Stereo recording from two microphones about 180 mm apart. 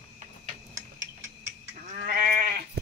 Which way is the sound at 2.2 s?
55° right (ahead or behind).